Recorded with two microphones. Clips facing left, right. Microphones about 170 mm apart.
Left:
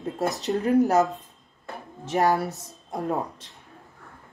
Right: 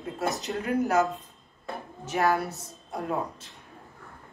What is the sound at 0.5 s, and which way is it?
Speech, 25° left (ahead or behind).